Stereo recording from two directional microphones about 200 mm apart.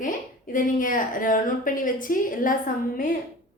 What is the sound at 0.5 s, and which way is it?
A woman's voice, 40° left (ahead or behind).